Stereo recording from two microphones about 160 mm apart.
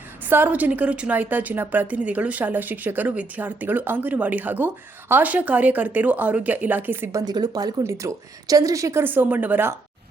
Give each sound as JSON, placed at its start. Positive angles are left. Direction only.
{"t": 0.3, "sound": "a woman's voice", "side_deg": -10}